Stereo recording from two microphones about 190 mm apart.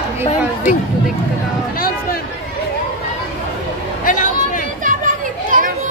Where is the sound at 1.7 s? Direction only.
50° left (ahead or behind).